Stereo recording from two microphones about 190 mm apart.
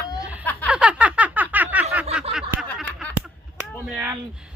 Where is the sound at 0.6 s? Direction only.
5° right (ahead or behind).